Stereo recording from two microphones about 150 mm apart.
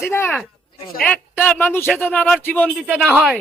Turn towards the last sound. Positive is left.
turn(degrees=-5)  # may be behind; listen again after turning